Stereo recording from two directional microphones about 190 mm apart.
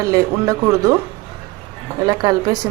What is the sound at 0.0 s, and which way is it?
Speech, 15° right (ahead or behind).